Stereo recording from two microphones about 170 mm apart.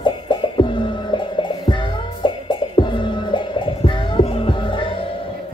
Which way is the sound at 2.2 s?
30° left (ahead or behind).